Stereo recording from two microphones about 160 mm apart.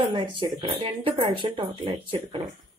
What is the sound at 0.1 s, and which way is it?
Speech, 30° right (ahead or behind).